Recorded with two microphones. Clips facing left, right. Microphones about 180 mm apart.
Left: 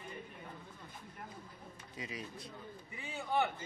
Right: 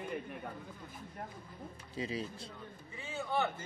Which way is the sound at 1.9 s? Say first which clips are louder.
Right 7 dB; 30° right (ahead or behind).